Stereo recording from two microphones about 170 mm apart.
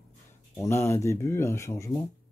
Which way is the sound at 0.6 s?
15° left (ahead or behind).